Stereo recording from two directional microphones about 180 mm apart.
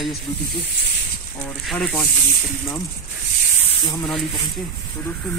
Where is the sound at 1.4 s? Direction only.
5° left (ahead or behind).